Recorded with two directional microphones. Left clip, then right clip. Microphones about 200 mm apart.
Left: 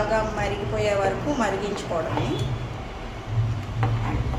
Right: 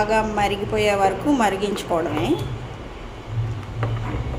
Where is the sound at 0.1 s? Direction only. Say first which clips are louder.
Right 4 dB; 45° right (ahead or behind).